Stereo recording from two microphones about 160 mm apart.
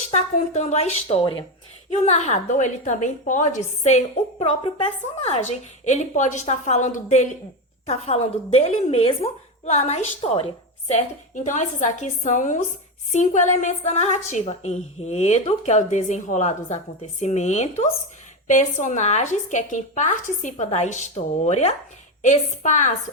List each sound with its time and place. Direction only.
0.1 s a woman's voice: 45° left (ahead or behind)
1.9 s a woman's voice: 45° left (ahead or behind)
5.8 s a woman's voice: 45° left (ahead or behind)